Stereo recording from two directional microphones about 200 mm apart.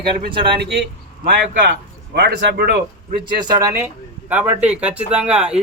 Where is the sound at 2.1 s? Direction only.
55° right (ahead or behind).